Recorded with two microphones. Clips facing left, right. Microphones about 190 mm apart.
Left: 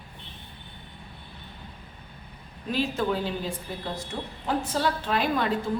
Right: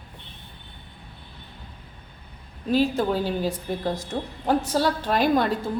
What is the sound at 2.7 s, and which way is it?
Speech, 40° right (ahead or behind).